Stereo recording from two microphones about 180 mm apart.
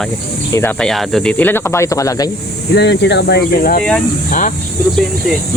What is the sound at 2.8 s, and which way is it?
Speech, 70° left (ahead or behind).